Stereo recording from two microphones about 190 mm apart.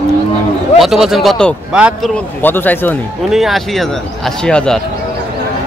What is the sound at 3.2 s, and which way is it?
A man's voice, centre (ahead or behind).